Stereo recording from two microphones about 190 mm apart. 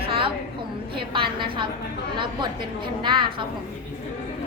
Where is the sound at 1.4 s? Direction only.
25° right (ahead or behind).